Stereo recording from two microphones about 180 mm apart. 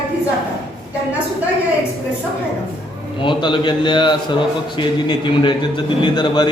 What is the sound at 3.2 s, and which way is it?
A man's voice, 25° left (ahead or behind).